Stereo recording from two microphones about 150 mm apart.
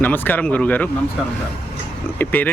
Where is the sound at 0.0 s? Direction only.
10° left (ahead or behind).